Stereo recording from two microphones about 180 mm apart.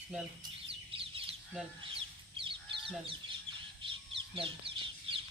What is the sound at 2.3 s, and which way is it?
Crow, 30° right (ahead or behind).